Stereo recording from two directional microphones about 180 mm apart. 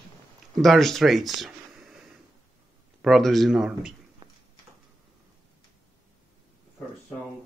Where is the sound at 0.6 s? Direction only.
Centre (ahead or behind).